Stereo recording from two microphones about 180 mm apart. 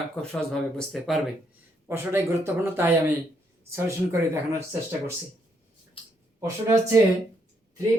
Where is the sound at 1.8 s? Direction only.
10° right (ahead or behind).